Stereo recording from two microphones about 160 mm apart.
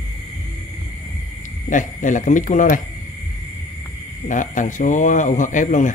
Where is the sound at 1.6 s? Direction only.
55° left (ahead or behind).